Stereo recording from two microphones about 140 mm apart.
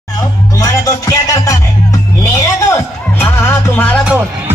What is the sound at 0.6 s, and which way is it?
Music, 20° left (ahead or behind).